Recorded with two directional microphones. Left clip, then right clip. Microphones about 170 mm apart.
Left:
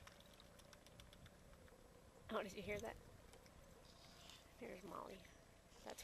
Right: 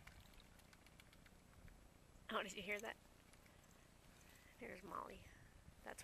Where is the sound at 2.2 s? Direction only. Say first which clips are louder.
Right 1 dB; centre (ahead or behind).